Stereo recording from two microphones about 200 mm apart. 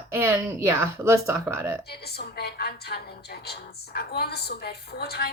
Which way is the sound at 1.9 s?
55° left (ahead or behind).